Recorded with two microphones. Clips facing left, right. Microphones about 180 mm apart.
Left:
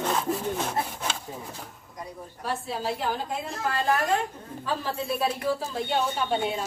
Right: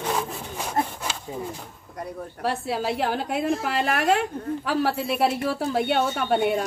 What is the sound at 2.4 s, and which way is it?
A woman's voice, 70° right (ahead or behind).